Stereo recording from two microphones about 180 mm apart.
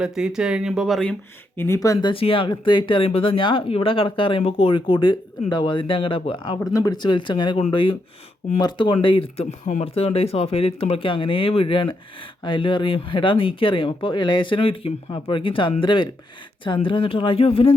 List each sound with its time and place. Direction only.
0.0 s speech: 5° right (ahead or behind)
1.5 s speech: 15° left (ahead or behind); by 17.7 s 30° left (ahead or behind)